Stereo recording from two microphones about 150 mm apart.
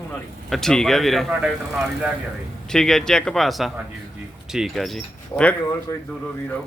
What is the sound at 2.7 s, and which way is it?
Speech, 5° left (ahead or behind).